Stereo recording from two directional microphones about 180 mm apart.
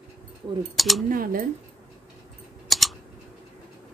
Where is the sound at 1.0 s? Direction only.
50° right (ahead or behind).